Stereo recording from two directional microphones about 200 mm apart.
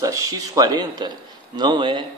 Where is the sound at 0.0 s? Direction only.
15° right (ahead or behind).